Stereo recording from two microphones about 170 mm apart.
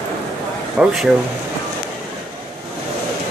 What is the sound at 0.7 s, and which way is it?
Speech, 5° right (ahead or behind).